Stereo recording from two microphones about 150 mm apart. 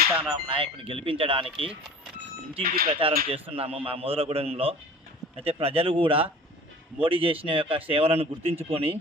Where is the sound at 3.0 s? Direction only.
35° right (ahead or behind).